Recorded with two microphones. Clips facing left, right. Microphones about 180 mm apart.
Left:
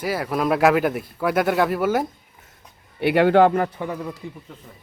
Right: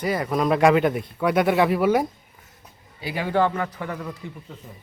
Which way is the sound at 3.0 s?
70° left (ahead or behind).